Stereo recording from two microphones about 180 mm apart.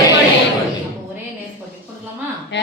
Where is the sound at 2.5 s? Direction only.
75° left (ahead or behind).